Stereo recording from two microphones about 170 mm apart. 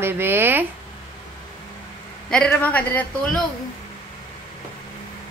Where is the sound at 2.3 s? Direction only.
5° left (ahead or behind).